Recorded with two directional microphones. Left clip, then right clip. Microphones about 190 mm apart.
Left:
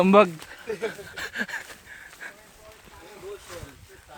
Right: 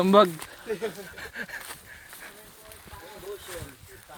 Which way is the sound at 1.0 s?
50° left (ahead or behind).